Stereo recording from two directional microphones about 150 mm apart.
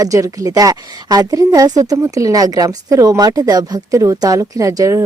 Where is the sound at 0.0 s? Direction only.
25° right (ahead or behind).